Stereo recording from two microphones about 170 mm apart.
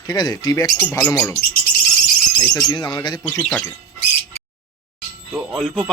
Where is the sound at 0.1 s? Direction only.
25° left (ahead or behind).